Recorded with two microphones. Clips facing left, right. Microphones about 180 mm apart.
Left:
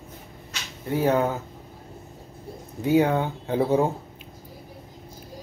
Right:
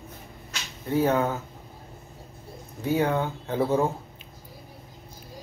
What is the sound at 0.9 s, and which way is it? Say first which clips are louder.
Speech: left 1 dB; 15° left (ahead or behind).